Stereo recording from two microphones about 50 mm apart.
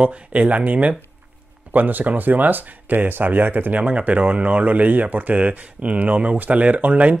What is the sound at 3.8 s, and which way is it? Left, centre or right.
Speech, right.